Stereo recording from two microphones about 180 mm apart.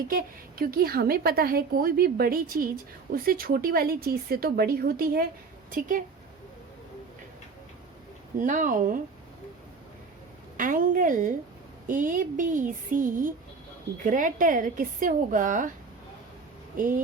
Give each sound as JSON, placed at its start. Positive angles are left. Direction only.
{"t": 0.1, "sound": "a woman's voice", "side_deg": -55}
{"t": 8.4, "sound": "a woman's voice", "side_deg": -45}
{"t": 10.6, "sound": "a woman's voice", "side_deg": -50}
{"t": 16.7, "sound": "speech", "side_deg": -50}